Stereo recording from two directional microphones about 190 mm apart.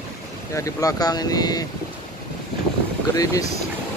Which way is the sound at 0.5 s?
15° left (ahead or behind).